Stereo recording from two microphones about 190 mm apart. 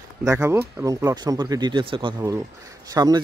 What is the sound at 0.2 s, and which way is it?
Speech, 15° right (ahead or behind).